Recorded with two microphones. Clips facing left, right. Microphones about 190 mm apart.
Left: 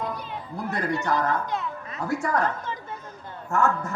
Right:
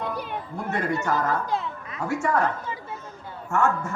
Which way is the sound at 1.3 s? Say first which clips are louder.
Right 1 dB; 30° right (ahead or behind).